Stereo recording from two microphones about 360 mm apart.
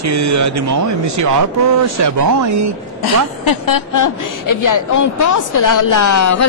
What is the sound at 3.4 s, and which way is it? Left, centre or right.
A woman's voice, left.